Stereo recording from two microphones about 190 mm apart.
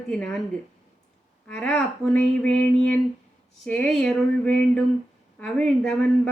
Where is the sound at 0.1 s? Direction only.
5° left (ahead or behind).